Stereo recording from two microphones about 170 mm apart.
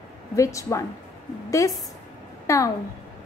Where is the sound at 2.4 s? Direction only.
20° left (ahead or behind).